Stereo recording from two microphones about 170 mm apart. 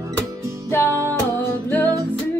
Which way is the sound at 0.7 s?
15° left (ahead or behind).